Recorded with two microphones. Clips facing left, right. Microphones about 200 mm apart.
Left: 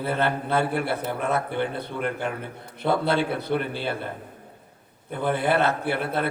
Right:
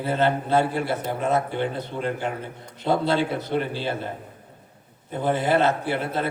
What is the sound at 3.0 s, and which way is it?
Speech, 60° left (ahead or behind).